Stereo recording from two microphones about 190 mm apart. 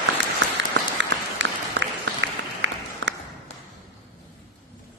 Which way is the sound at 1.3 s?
75° right (ahead or behind).